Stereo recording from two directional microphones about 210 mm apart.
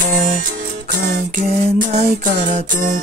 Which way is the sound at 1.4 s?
35° right (ahead or behind).